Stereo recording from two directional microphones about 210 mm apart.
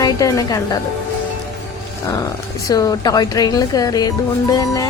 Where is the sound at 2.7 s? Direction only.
15° left (ahead or behind).